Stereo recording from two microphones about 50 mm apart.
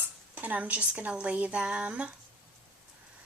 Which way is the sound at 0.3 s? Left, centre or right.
Right.